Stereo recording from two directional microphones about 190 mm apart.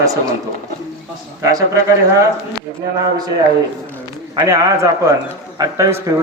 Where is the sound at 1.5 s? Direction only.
15° right (ahead or behind).